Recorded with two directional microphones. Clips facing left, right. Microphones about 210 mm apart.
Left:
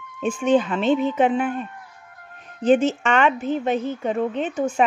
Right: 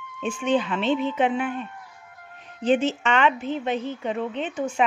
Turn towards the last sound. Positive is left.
turn(degrees=45)  # may be behind; listen again after turning